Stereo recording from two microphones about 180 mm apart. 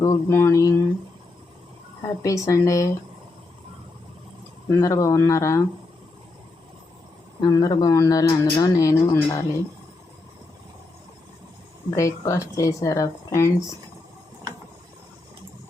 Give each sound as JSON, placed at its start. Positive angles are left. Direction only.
{"t": 0.0, "sound": "speech", "side_deg": 15}
{"t": 2.2, "sound": "speech", "side_deg": 15}
{"t": 4.8, "sound": "speech", "side_deg": 20}
{"t": 7.4, "sound": "speech", "side_deg": 20}
{"t": 11.9, "sound": "speech", "side_deg": 15}